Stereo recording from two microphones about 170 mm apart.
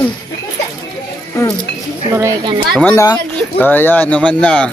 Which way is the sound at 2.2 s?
20° right (ahead or behind).